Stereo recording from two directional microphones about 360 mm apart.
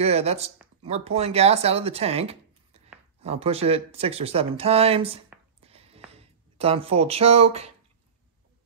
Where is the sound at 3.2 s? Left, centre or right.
Centre.